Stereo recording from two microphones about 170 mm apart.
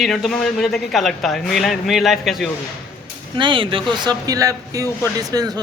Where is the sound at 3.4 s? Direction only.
30° right (ahead or behind).